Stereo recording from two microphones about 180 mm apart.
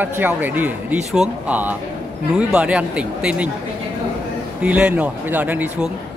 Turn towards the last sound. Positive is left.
turn(degrees=-10)  # may be behind; listen again after turning